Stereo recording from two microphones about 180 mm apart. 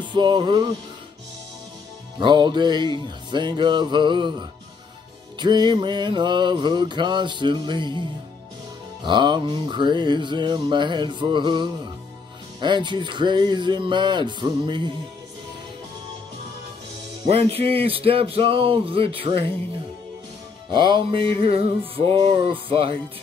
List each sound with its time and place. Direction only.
0.0 s music: 25° right (ahead or behind)
2.1 s music: 25° right (ahead or behind)
9.0 s music: 25° right (ahead or behind)
17.3 s a sound: 35° right (ahead or behind)
20.7 s music: 25° right (ahead or behind)
21.4 s a sound: 30° right (ahead or behind)
22.2 s music: 30° right (ahead or behind)